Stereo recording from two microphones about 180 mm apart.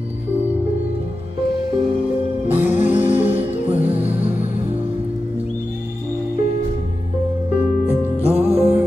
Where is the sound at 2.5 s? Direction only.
10° right (ahead or behind).